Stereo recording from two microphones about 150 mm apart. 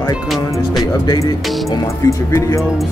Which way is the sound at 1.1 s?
25° left (ahead or behind).